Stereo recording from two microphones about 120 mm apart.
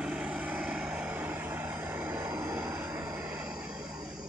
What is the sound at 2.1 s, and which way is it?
Vehicle, 30° right (ahead or behind).